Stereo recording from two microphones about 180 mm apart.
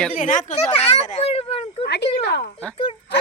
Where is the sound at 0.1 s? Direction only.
45° left (ahead or behind).